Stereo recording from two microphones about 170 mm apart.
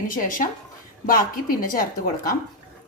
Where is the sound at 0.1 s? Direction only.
55° left (ahead or behind).